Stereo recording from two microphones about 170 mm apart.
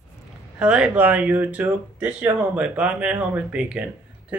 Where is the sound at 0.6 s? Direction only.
5° right (ahead or behind).